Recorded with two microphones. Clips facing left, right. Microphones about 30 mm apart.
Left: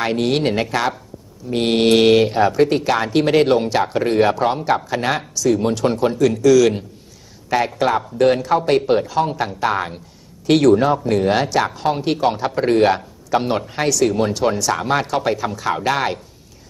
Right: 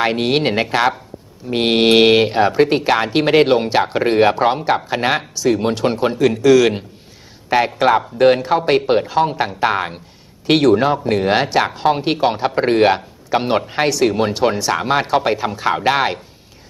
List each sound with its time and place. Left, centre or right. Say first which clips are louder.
0.0 s speech: right 2 dB; right